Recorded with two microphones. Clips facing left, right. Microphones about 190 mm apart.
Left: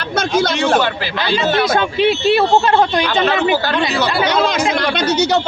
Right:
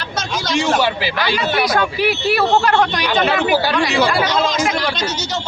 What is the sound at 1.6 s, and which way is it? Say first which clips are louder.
Speech: left 3 dB; 25° left (ahead or behind).